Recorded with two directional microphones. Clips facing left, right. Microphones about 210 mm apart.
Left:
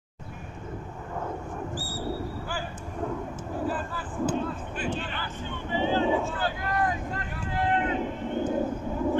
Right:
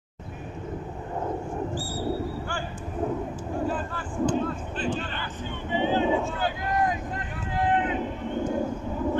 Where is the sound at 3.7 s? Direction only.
5° left (ahead or behind).